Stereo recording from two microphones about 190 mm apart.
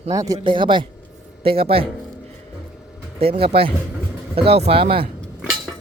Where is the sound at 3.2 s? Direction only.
30° right (ahead or behind).